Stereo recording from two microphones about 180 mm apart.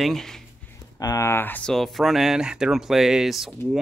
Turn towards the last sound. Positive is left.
turn(degrees=0)  # may be behind; listen again after turning